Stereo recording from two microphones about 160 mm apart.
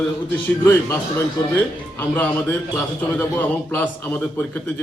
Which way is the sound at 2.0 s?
10° left (ahead or behind).